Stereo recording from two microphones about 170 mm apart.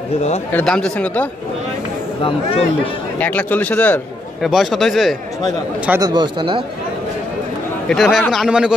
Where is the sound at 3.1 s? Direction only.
10° left (ahead or behind).